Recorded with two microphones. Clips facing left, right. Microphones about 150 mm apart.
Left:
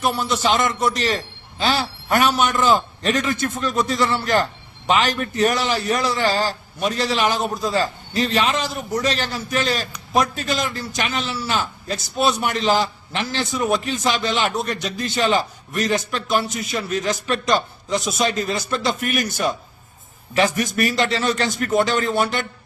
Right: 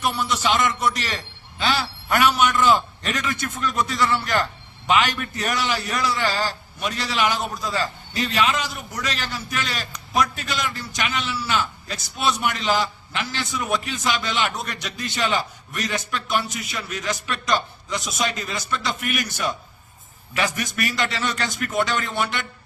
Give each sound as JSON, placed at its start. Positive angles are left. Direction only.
{"t": 0.0, "sound": "a man's voice", "side_deg": 30}